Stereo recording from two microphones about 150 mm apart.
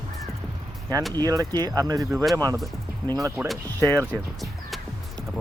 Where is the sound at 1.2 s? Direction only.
25° right (ahead or behind).